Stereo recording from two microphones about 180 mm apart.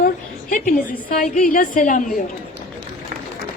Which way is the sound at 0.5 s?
45° left (ahead or behind).